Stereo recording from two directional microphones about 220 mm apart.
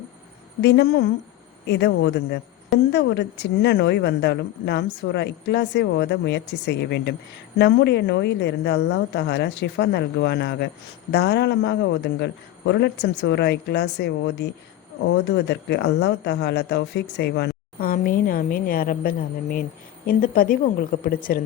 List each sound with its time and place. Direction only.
0.6 s a woman's voice: 50° left (ahead or behind)